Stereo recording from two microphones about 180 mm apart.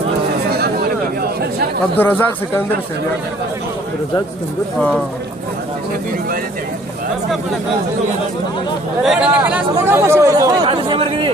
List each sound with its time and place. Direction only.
0.5 s chatter: 60° right (ahead or behind)
2.0 s speech: 10° left (ahead or behind)
4.8 s speech: 5° left (ahead or behind)
9.0 s speech: 5° right (ahead or behind); by 11.3 s 30° right (ahead or behind)